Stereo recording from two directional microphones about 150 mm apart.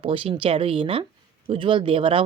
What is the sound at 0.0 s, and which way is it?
Speech, 35° right (ahead or behind).